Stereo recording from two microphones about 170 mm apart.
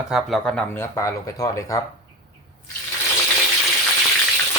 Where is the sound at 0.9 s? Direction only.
20° left (ahead or behind).